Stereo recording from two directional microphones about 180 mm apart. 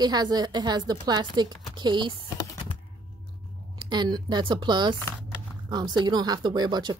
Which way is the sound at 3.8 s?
25° right (ahead or behind).